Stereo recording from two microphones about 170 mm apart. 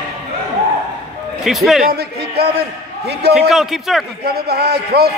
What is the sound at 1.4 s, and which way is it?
Speech, centre (ahead or behind).